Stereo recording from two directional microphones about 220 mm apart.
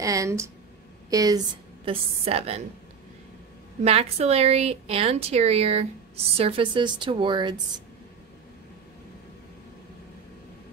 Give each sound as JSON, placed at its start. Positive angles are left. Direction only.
{"t": 0.0, "sound": "a woman's voice", "side_deg": -15}
{"t": 1.9, "sound": "a woman's voice", "side_deg": -30}
{"t": 3.8, "sound": "a woman's voice", "side_deg": -30}